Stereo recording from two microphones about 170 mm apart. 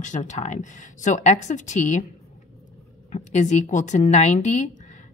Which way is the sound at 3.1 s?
45° left (ahead or behind).